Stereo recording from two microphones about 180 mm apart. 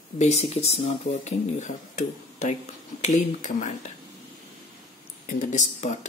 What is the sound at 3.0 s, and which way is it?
Speech, 45° left (ahead or behind).